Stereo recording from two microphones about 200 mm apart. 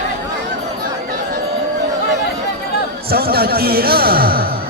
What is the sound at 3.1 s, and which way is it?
Speech, 50° right (ahead or behind).